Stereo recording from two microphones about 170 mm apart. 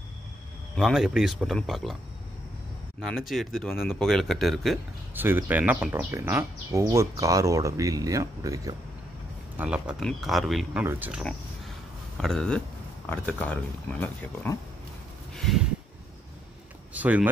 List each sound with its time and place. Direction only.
0.7 s speech: centre (ahead or behind)
3.0 s speech: centre (ahead or behind)
5.1 s speech: 10° right (ahead or behind)
9.6 s speech: 5° right (ahead or behind)
12.2 s speech: 5° left (ahead or behind)
15.3 s a sound: centre (ahead or behind)
16.9 s speech: 10° right (ahead or behind)